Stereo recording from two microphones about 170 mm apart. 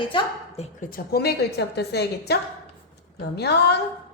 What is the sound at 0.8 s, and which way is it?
Speech, 60° left (ahead or behind).